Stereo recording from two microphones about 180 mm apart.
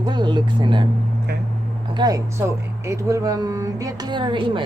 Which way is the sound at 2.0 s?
20° right (ahead or behind).